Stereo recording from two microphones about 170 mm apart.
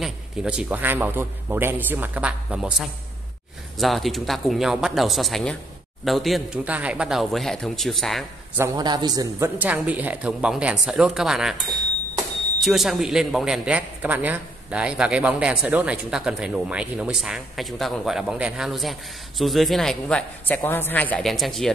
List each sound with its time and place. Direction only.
0.0 s a man's voice: 5° right (ahead or behind)
8.5 s a man's voice: 20° right (ahead or behind)
9.6 s a man's voice: 10° right (ahead or behind)